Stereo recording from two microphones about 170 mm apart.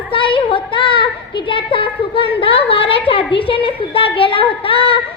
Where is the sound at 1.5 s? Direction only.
30° left (ahead or behind).